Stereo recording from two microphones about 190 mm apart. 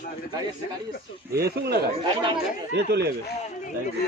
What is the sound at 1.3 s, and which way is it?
Speech, 55° right (ahead or behind).